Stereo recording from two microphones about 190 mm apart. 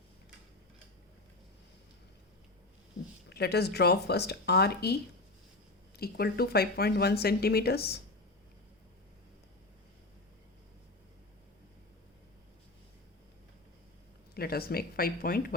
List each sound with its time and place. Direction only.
3.2 s speech: 60° left (ahead or behind)
6.0 s speech: 55° left (ahead or behind)
14.3 s speech: 55° left (ahead or behind)